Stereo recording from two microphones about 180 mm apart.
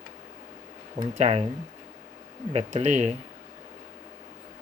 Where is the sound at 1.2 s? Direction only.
35° right (ahead or behind).